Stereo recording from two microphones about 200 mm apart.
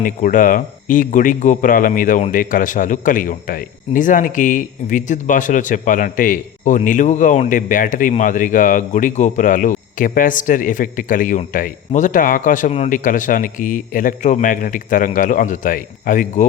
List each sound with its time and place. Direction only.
0.0 s speech: 40° left (ahead or behind)